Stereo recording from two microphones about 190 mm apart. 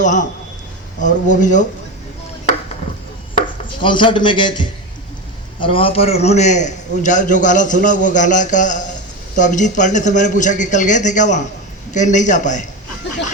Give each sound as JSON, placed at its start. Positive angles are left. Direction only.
{"t": 0.0, "sound": "a man's voice", "side_deg": 40}
{"t": 3.8, "sound": "a man's voice", "side_deg": 25}